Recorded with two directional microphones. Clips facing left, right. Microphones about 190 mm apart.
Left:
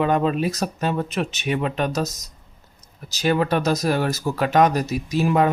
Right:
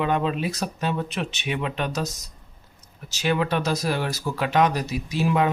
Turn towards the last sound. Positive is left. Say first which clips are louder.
# left 3 dB
turn(degrees=45)  # may be behind; listen again after turning